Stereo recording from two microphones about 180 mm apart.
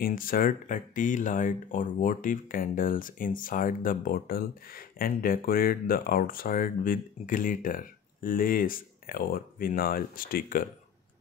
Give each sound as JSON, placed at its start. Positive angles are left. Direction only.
{"t": 0.0, "sound": "speech", "side_deg": 50}